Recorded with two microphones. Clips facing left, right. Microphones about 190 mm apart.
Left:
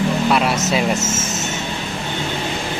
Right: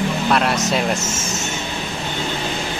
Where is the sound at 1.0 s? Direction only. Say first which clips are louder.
Left 3 dB; 20° left (ahead or behind).